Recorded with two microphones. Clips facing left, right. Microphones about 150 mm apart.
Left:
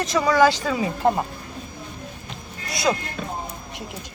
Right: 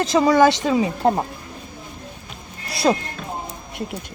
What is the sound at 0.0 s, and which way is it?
Speech, 30° right (ahead or behind).